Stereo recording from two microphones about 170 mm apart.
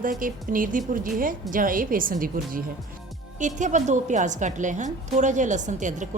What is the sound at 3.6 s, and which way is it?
A woman's voice, 45° right (ahead or behind).